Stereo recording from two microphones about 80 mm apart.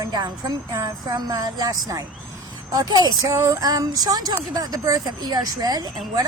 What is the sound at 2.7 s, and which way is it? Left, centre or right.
Speech, right.